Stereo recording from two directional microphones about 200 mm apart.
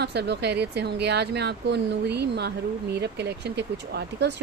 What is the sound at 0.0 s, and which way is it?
Speech, 55° right (ahead or behind).